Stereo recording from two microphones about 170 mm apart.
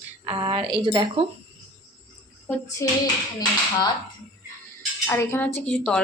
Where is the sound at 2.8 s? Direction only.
15° left (ahead or behind).